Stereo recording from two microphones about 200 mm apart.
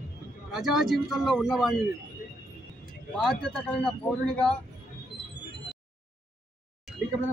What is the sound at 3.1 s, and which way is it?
Speech, 5° left (ahead or behind).